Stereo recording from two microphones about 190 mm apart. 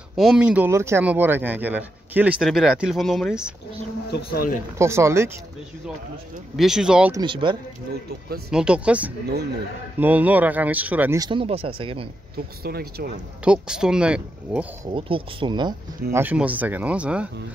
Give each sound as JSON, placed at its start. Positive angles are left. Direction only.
{"t": 0.1, "sound": "speech", "side_deg": 0}
{"t": 4.1, "sound": "speech", "side_deg": 55}
{"t": 4.7, "sound": "speech", "side_deg": -15}
{"t": 6.5, "sound": "speech", "side_deg": 0}
{"t": 7.2, "sound": "speech", "side_deg": -25}
{"t": 8.5, "sound": "speech", "side_deg": -5}
{"t": 12.6, "sound": "speech", "side_deg": -55}
{"t": 13.4, "sound": "speech", "side_deg": -5}
{"t": 14.9, "sound": "speech", "side_deg": -25}
{"t": 16.2, "sound": "speech", "side_deg": -10}